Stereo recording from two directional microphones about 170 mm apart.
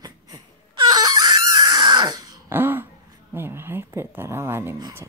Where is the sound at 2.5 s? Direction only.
10° right (ahead or behind).